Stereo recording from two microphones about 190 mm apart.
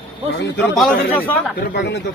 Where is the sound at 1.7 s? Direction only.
60° left (ahead or behind).